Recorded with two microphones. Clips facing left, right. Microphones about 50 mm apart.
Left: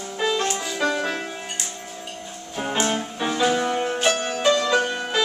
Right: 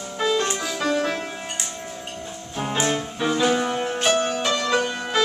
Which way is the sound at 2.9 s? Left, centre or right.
Centre.